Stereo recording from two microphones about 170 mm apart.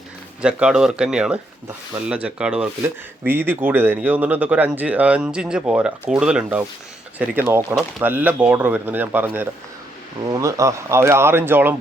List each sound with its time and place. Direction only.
0.4 s speech: 5° right (ahead or behind)